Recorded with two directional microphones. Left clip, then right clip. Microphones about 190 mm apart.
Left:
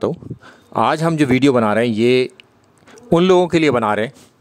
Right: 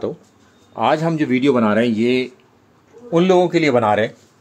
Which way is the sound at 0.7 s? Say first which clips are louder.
Left 1 dB; 60° left (ahead or behind).